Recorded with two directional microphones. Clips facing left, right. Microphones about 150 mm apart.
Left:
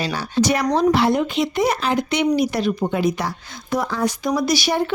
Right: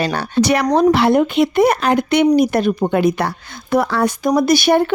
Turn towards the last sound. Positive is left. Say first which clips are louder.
# right 6 dB
turn(degrees=-55)  # may be behind; listen again after turning